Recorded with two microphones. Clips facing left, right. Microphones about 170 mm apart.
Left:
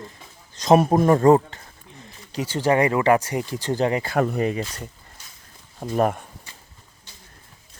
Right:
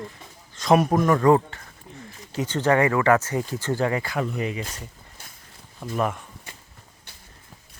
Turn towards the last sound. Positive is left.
turn(degrees=45)  # may be behind; listen again after turning